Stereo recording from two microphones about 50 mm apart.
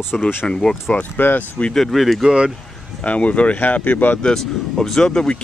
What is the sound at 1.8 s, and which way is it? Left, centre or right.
Speech, centre.